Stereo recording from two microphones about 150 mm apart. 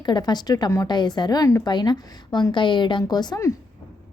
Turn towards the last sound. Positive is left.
turn(degrees=25)  # may be behind; listen again after turning